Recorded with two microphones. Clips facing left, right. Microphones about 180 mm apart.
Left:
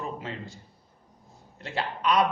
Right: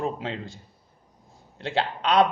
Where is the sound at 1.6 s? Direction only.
90° right.